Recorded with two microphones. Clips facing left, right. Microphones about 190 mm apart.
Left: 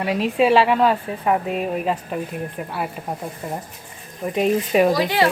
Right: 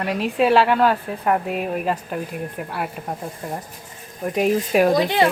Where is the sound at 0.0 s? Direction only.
Centre (ahead or behind).